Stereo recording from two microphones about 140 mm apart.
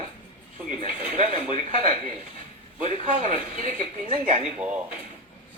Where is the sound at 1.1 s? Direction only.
40° left (ahead or behind).